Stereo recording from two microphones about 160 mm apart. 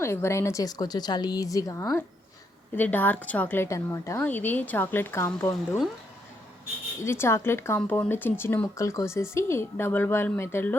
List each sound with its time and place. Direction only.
0.0 s a woman's voice: 15° left (ahead or behind)
7.0 s a woman's voice: 15° left (ahead or behind)